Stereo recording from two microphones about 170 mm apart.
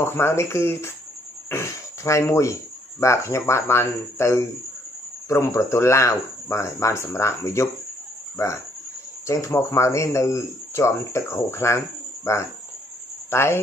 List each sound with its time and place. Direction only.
0.0 s speech: 15° left (ahead or behind)
9.3 s speech: 15° left (ahead or behind)